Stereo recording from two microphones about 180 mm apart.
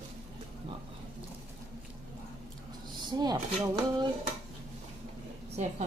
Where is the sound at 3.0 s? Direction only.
20° right (ahead or behind).